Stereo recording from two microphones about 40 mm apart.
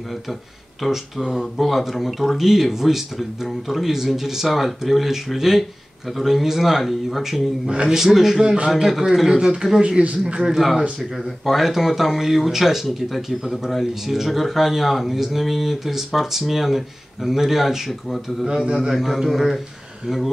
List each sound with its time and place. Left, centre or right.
0.8 s speech: centre
7.7 s speech: centre
11.4 s speech: centre